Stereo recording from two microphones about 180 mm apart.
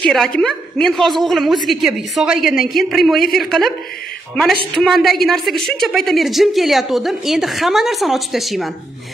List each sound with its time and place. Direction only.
0.0 s a woman's voice: 5° left (ahead or behind)
4.7 s a woman's voice: centre (ahead or behind)